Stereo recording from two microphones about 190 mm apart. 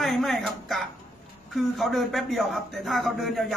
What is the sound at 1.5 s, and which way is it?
A man's voice, centre (ahead or behind).